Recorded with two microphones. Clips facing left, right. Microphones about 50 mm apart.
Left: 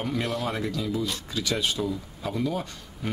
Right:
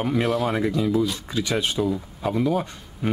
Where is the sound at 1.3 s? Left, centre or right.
Right.